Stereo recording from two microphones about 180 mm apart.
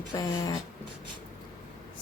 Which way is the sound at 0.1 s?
20° left (ahead or behind).